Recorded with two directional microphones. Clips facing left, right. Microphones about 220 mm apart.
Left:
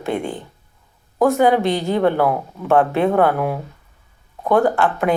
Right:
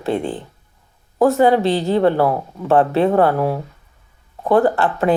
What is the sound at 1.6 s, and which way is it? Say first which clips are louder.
Speech: right 2 dB; 30° right (ahead or behind).